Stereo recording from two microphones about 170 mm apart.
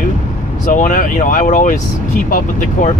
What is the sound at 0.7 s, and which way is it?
Speech, 50° left (ahead or behind).